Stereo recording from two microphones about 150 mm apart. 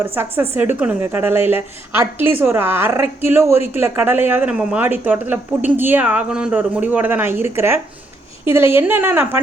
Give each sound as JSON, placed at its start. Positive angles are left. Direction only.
{"t": 0.0, "sound": "speech", "side_deg": -15}